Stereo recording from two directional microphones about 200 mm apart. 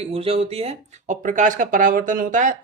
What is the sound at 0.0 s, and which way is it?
Speech, 30° right (ahead or behind).